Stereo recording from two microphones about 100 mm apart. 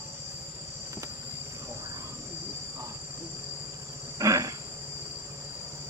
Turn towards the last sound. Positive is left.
turn(degrees=-35)  # may be behind; listen again after turning